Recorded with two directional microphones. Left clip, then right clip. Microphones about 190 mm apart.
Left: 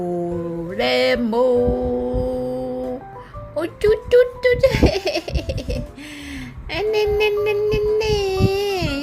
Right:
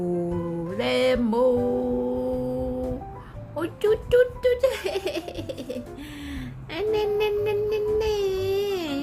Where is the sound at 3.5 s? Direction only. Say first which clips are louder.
Left 5 dB; 10° left (ahead or behind).